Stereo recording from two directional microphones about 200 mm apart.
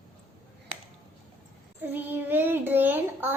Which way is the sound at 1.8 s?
10° right (ahead or behind).